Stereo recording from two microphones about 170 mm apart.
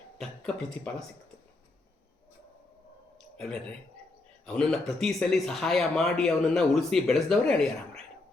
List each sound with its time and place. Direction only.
0.2 s speech: 5° left (ahead or behind)
3.3 s speech: 5° left (ahead or behind)